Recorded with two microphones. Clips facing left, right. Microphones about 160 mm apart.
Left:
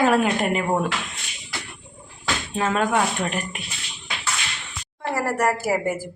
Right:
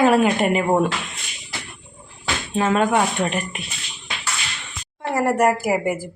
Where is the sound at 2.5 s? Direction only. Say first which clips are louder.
Right 4 dB; 5° right (ahead or behind).